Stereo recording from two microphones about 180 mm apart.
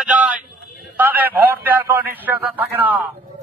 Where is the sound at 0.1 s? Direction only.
10° right (ahead or behind).